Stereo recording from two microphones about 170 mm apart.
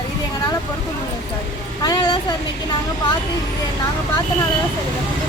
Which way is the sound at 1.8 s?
25° left (ahead or behind).